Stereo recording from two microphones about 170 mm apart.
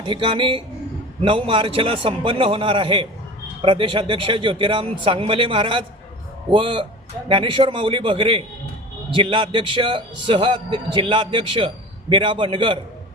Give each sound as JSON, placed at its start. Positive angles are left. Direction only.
{"t": 0.0, "sound": "a man's voice", "side_deg": -30}